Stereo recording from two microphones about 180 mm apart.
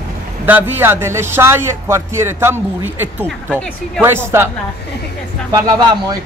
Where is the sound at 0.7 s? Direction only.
10° right (ahead or behind).